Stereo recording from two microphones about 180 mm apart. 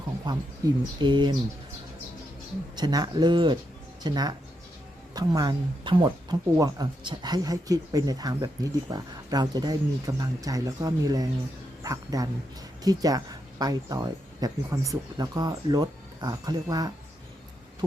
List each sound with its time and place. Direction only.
0.3 s speech: 25° right (ahead or behind)
2.7 s speech: 25° right (ahead or behind)